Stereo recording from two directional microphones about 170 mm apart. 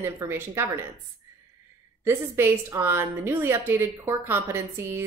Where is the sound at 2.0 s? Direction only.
15° right (ahead or behind).